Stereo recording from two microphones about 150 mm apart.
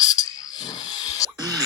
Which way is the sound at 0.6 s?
30° left (ahead or behind).